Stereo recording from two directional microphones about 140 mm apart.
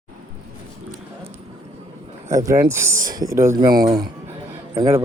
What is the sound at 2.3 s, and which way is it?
Speech, 25° right (ahead or behind).